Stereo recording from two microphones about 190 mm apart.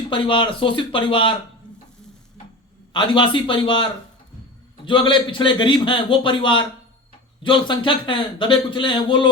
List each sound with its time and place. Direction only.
0.1 s speech: 25° left (ahead or behind)
2.9 s speech: 25° left (ahead or behind)
4.9 s speech: 25° left (ahead or behind)